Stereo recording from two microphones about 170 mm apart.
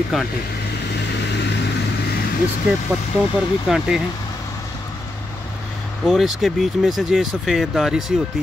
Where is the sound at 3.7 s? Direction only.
5° right (ahead or behind).